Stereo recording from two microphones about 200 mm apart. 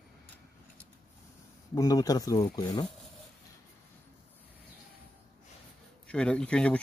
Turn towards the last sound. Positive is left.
turn(degrees=5)  # may be behind; listen again after turning